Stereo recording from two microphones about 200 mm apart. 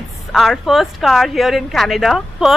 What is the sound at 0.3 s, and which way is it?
A woman's voice, centre (ahead or behind).